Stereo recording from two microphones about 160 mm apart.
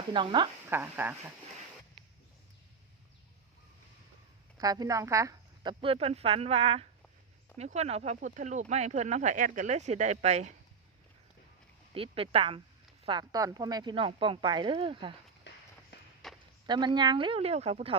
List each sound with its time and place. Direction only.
0.1 s speech: 30° right (ahead or behind)
0.7 s a sound: 10° right (ahead or behind)
4.5 s speech: 25° right (ahead or behind)
5.8 s speech: 35° right (ahead or behind)
11.9 s speech: 35° right (ahead or behind)
15.5 s run: 90° left
16.2 s walk: centre (ahead or behind)
16.6 s speech: 25° right (ahead or behind)